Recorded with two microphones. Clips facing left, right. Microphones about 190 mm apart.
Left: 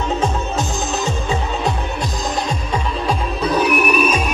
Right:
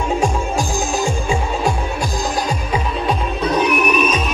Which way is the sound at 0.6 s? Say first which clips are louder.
Right 2 dB; 20° left (ahead or behind).